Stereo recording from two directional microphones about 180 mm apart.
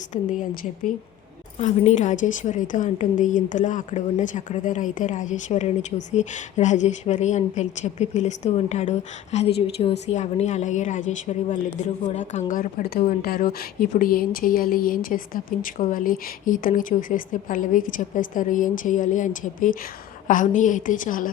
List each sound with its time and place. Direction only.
0.1 s a woman's voice: 45° left (ahead or behind)